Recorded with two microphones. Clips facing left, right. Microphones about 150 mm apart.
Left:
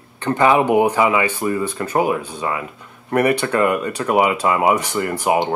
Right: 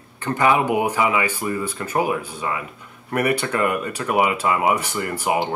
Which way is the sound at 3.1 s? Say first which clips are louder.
Left 4 dB; 35° left (ahead or behind).